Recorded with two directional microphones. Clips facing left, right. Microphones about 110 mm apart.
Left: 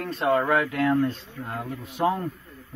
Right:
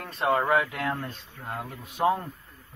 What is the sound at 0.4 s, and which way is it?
A man's voice, 15° right (ahead or behind).